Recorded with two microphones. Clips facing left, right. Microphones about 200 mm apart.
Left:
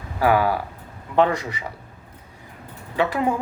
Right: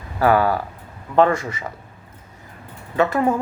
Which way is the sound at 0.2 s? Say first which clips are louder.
Right 2 dB; 10° left (ahead or behind).